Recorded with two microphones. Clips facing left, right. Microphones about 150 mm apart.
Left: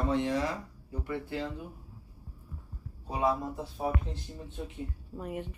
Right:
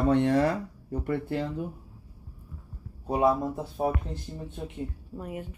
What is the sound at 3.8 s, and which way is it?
Speech, 45° right (ahead or behind).